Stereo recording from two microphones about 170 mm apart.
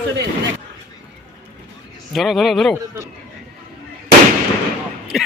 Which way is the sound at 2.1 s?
Centre (ahead or behind).